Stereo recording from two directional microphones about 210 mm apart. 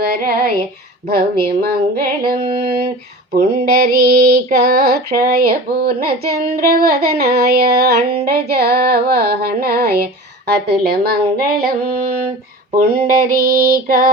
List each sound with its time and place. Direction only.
0.0 s female singing: 45° right (ahead or behind)
3.8 s female singing: 50° right (ahead or behind)